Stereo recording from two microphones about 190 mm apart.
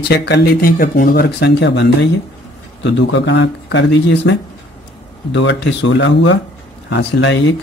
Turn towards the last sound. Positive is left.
turn(degrees=70)  # may be behind; listen again after turning